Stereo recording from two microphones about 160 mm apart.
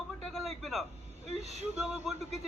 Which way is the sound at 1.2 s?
45° right (ahead or behind).